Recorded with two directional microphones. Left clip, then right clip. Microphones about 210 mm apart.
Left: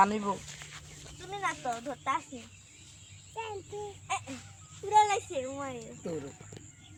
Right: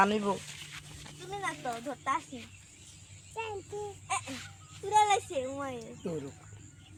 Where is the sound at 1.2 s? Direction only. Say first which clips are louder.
Left 2 dB; centre (ahead or behind).